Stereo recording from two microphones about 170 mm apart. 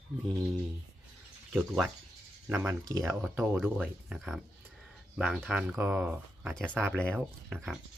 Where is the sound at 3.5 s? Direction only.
5° right (ahead or behind).